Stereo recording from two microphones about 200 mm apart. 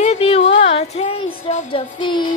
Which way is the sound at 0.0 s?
30° left (ahead or behind).